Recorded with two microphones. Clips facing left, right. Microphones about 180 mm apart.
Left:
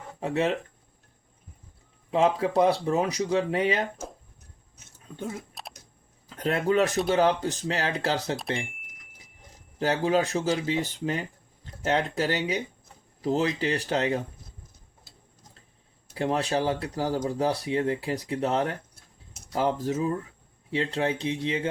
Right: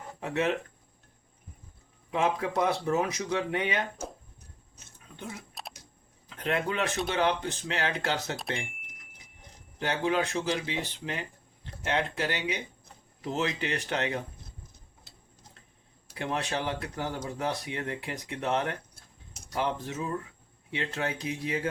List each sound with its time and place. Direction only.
0.2 s speech: 30° left (ahead or behind)
2.0 s speech: 30° left (ahead or behind)
5.1 s speech: 45° left (ahead or behind)
8.4 s speech: centre (ahead or behind)
9.7 s speech: 35° left (ahead or behind)
16.1 s speech: 35° left (ahead or behind)